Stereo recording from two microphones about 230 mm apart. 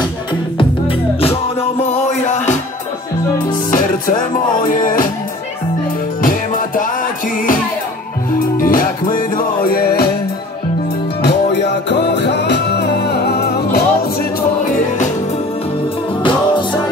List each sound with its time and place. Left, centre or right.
1.2 s music: left
3.7 s music: left
6.2 s music: left
8.3 s music: left
11.2 s music: left
16.2 s music: left